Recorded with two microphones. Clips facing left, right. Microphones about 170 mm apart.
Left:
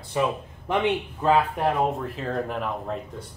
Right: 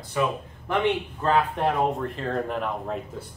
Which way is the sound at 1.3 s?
Centre (ahead or behind).